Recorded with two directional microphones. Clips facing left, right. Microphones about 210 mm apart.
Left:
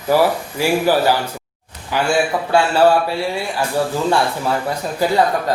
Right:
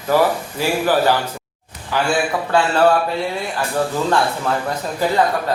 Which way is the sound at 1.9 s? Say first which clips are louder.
Left 1 dB; 15° left (ahead or behind).